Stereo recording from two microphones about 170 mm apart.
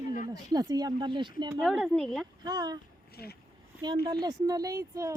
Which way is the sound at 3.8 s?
25° right (ahead or behind).